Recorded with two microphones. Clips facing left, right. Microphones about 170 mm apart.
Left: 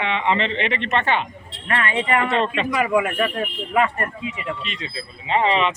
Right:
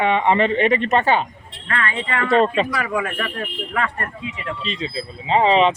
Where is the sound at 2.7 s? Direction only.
15° left (ahead or behind).